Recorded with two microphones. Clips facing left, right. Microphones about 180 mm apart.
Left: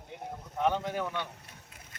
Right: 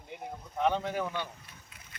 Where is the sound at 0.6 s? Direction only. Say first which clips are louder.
Even; centre (ahead or behind).